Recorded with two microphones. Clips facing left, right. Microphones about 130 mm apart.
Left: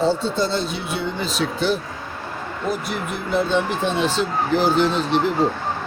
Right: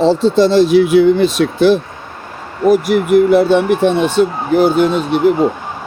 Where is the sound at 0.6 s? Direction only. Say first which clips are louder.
Right 17 dB; 80° right; by 5.3 s 55° right (ahead or behind).